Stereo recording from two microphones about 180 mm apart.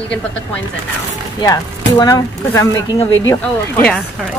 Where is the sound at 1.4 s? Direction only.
20° left (ahead or behind).